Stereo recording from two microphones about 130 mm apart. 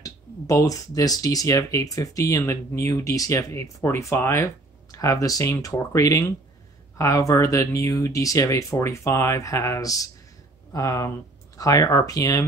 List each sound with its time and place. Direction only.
0.0 s speech: 25° left (ahead or behind)